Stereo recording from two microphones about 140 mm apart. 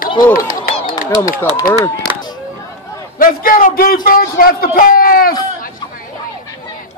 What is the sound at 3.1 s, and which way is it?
Speech, 90° left.